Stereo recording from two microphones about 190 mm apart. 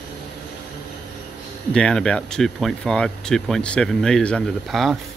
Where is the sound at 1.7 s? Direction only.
5° left (ahead or behind).